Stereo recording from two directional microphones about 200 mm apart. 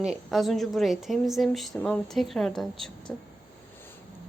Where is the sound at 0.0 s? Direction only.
Centre (ahead or behind).